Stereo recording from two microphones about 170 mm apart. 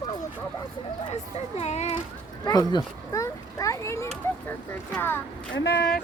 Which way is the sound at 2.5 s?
25° left (ahead or behind).